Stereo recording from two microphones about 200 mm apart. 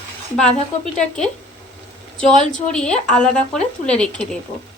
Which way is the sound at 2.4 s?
40° left (ahead or behind).